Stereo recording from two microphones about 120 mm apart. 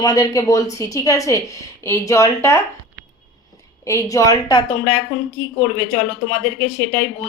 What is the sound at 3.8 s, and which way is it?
Speech, 25° left (ahead or behind).